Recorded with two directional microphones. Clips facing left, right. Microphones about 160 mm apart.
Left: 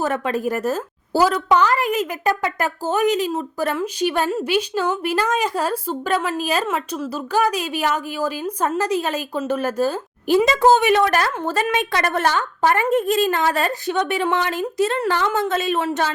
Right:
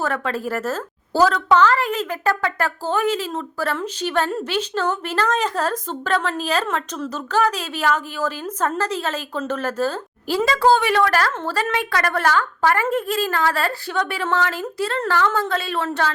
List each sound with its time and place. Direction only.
0.0 s a woman's voice: 15° left (ahead or behind)